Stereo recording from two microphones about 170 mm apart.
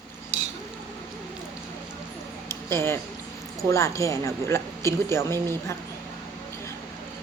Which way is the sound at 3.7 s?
15° left (ahead or behind).